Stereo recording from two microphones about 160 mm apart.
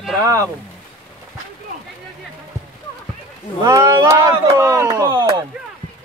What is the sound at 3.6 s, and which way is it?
Speech, 20° right (ahead or behind).